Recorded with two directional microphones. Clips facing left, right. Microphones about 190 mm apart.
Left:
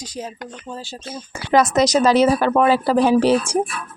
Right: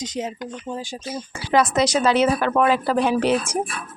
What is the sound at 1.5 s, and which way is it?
A woman's voice, 40° left (ahead or behind).